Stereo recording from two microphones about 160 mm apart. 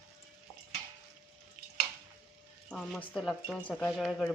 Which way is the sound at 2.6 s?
Centre (ahead or behind).